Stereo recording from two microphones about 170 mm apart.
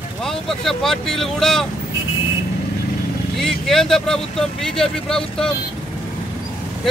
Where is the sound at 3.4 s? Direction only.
Centre (ahead or behind).